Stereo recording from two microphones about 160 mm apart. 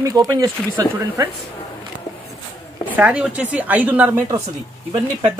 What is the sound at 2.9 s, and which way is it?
A woman's voice, 10° right (ahead or behind).